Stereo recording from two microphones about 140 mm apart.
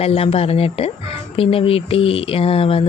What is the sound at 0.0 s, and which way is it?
Speech, 45° left (ahead or behind).